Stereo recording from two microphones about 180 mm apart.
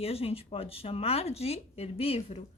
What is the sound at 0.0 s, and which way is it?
A woman's voice, 35° left (ahead or behind).